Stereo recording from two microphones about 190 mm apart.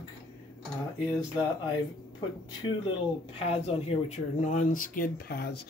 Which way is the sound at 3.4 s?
35° left (ahead or behind).